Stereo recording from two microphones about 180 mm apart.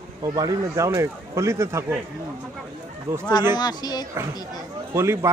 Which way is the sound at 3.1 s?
15° right (ahead or behind).